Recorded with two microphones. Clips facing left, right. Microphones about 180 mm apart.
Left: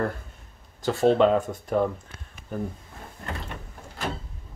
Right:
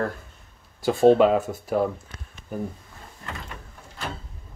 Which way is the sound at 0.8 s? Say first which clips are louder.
Right 3 dB; 15° right (ahead or behind).